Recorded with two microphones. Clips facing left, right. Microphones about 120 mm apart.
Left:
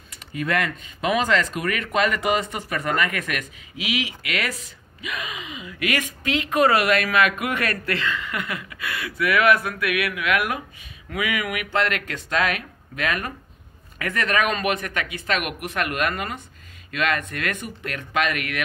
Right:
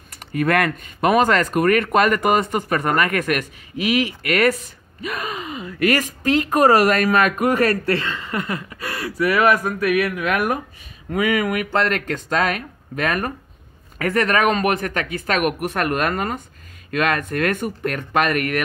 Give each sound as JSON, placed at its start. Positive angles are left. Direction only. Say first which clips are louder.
{"t": 0.1, "sound": "speech", "louder": "right 6 dB", "side_deg": -50}